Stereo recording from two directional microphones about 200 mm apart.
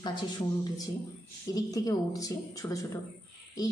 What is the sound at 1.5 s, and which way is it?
Speech, 20° left (ahead or behind).